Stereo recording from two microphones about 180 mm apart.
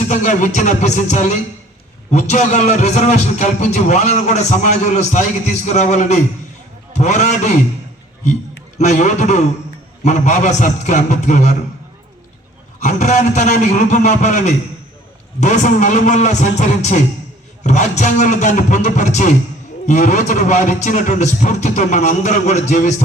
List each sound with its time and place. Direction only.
0.1 s a man's voice: 40° left (ahead or behind)
8.8 s a man's voice: 40° left (ahead or behind)
12.8 s a man's voice: 40° left (ahead or behind)